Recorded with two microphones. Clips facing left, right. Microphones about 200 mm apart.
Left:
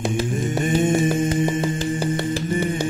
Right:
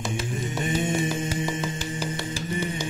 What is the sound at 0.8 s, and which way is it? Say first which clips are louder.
Music: left 7 dB; 55° left (ahead or behind).